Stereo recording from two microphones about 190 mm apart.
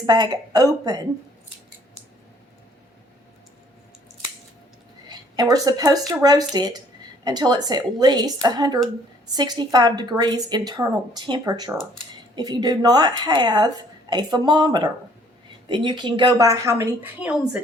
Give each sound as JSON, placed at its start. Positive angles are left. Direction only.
{"t": 0.0, "sound": "a woman's voice", "side_deg": -20}
{"t": 5.0, "sound": "a woman's voice", "side_deg": -20}